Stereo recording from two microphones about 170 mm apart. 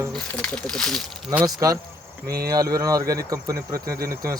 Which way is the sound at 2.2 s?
65° right (ahead or behind).